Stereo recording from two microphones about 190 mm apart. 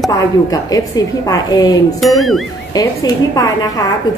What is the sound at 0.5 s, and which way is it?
A woman's voice, 20° left (ahead or behind).